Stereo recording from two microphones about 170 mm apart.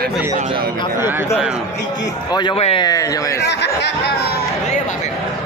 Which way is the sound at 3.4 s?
75° left (ahead or behind).